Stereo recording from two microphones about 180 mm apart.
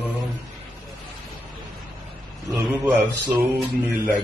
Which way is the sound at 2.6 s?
10° right (ahead or behind).